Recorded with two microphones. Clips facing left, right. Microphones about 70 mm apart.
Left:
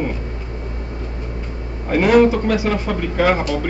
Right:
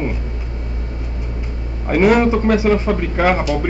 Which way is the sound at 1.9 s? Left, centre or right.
Right.